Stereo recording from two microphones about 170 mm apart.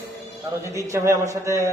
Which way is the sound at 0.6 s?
15° right (ahead or behind).